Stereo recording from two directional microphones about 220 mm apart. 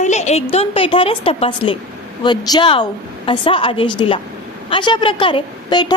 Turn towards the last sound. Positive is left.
turn(degrees=20)  # may be behind; listen again after turning